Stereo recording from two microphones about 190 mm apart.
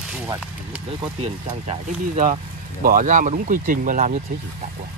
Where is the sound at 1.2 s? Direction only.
35° right (ahead or behind).